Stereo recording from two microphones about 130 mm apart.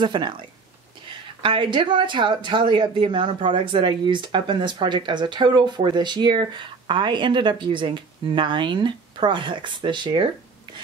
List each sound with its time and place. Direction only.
0.0 s speech: 35° right (ahead or behind)